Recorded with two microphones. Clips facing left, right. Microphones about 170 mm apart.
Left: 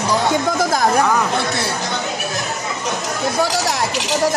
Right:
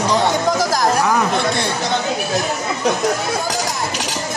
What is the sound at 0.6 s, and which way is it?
Speech, 55° left (ahead or behind).